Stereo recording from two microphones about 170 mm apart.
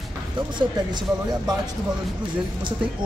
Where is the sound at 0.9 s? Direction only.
25° right (ahead or behind).